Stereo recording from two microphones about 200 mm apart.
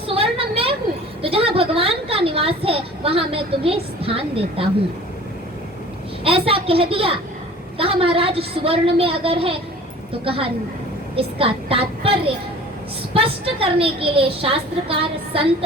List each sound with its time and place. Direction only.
0.1 s a sound: 30° right (ahead or behind)
6.2 s a woman's voice: 30° right (ahead or behind)
13.1 s a woman's voice: 30° right (ahead or behind)